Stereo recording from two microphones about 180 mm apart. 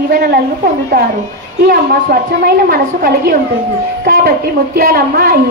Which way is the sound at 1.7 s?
55° right (ahead or behind).